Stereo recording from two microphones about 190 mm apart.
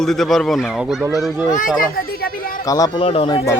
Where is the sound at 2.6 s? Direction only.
20° left (ahead or behind).